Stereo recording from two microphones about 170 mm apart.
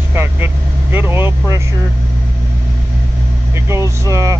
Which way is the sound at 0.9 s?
15° right (ahead or behind).